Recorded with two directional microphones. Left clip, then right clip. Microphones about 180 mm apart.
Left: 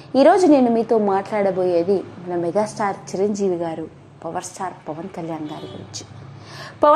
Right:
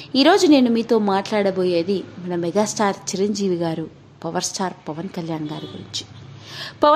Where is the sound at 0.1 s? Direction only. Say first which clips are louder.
Left 1 dB; 30° right (ahead or behind).